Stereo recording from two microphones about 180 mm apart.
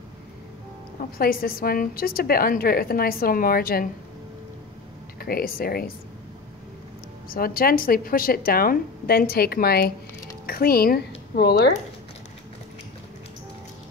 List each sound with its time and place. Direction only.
1.1 s a woman's voice: 55° left (ahead or behind)
5.2 s a woman's voice: 55° left (ahead or behind)
7.2 s a woman's voice: 55° left (ahead or behind)